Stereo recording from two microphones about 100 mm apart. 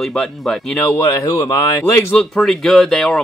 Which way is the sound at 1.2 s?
35° left (ahead or behind).